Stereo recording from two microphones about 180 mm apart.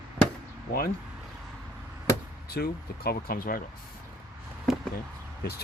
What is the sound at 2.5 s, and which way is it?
Speech, 60° left (ahead or behind).